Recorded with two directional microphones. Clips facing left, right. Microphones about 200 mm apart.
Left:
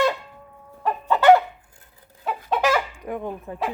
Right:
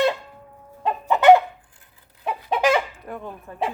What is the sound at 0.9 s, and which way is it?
Chicken, 20° right (ahead or behind).